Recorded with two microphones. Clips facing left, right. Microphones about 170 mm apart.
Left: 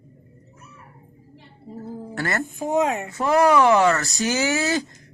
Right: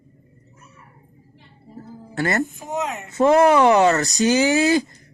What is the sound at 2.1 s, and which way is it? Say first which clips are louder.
Speech: right 5 dB; 20° right (ahead or behind).